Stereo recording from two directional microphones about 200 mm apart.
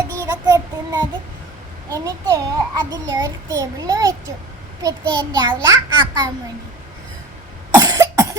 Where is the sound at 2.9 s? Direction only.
20° right (ahead or behind).